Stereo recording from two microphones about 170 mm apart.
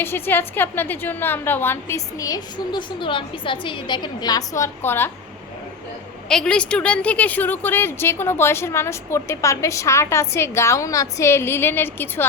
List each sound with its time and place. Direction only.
0.0 s a woman's voice: 15° left (ahead or behind)
6.2 s a woman's voice: 5° left (ahead or behind)